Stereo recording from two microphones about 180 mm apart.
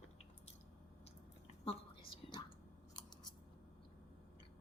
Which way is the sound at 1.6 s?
30° left (ahead or behind).